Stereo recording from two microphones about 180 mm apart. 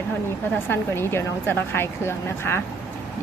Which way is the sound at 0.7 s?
15° left (ahead or behind).